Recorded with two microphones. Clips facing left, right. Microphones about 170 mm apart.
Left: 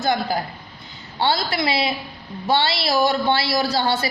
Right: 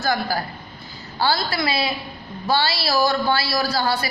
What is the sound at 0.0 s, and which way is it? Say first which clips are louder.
A woman's voice: left 1 dB; 20° left (ahead or behind).